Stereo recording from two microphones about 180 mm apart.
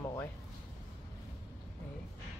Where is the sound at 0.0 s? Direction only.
15° left (ahead or behind).